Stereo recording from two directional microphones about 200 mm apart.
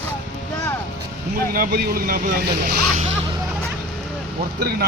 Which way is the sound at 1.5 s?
45° right (ahead or behind).